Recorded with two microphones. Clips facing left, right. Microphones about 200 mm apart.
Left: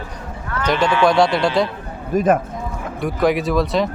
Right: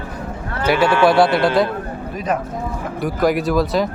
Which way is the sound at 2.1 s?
50° left (ahead or behind).